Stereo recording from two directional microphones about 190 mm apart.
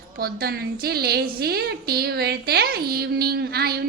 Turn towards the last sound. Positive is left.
turn(degrees=-55)  # may be behind; listen again after turning